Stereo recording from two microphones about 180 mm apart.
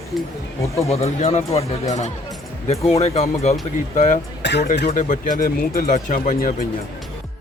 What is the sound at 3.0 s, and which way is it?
Speech, 35° left (ahead or behind).